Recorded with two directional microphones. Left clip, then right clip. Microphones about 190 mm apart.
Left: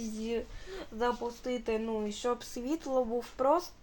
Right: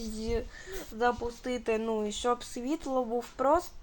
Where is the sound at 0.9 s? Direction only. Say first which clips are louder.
Right 3 dB; 25° right (ahead or behind).